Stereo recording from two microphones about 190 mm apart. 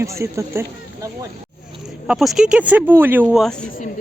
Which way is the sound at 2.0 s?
Centre (ahead or behind).